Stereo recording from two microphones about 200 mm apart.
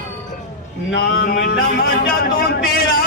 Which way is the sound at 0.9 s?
55° left (ahead or behind).